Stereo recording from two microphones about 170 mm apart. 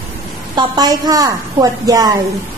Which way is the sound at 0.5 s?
25° right (ahead or behind).